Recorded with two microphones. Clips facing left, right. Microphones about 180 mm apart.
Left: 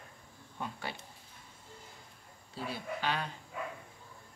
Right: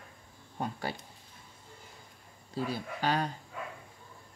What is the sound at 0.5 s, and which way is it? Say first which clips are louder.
Speech: right 5 dB; 40° right (ahead or behind).